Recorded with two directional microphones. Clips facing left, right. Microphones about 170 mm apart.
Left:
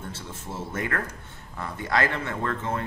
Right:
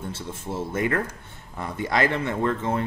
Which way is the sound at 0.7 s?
20° right (ahead or behind).